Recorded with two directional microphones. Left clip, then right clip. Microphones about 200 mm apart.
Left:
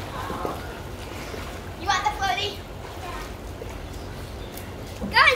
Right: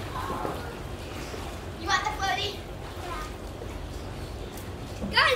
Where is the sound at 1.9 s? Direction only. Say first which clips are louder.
Left 3 dB; 5° right (ahead or behind).